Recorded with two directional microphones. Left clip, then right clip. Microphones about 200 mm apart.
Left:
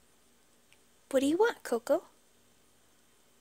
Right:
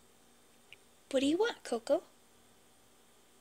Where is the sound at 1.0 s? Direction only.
30° left (ahead or behind).